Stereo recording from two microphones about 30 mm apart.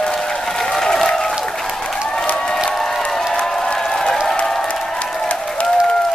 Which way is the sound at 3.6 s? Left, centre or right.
Centre.